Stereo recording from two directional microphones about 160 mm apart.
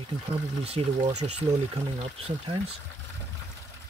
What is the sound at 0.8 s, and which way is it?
Speech, 35° right (ahead or behind).